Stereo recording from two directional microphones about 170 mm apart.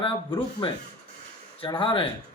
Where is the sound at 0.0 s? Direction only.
30° left (ahead or behind).